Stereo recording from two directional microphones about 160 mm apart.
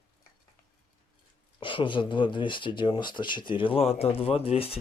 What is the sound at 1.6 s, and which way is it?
Speech, 30° left (ahead or behind).